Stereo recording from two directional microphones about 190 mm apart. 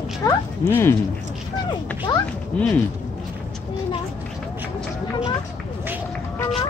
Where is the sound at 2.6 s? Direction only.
5° left (ahead or behind).